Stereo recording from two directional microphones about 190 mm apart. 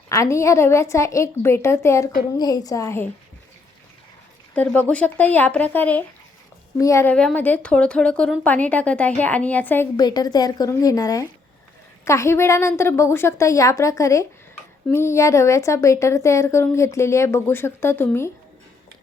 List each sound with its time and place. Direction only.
0.1 s a woman's voice: 15° left (ahead or behind)
4.5 s a woman's voice: 10° left (ahead or behind)